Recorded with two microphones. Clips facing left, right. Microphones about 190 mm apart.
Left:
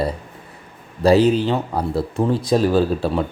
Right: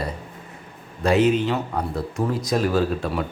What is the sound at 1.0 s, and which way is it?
Speech, 35° left (ahead or behind).